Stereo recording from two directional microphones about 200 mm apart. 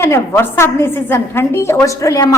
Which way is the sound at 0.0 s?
15° left (ahead or behind).